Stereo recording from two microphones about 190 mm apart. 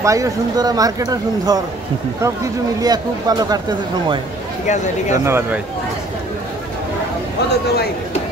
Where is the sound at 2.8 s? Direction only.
20° right (ahead or behind).